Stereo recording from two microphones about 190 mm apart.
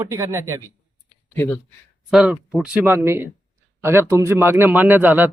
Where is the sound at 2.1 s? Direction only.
5° right (ahead or behind).